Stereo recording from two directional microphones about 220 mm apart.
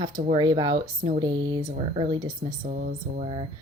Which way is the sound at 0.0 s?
20° right (ahead or behind).